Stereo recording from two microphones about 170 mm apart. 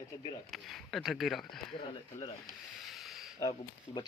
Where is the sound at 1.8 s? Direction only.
30° left (ahead or behind).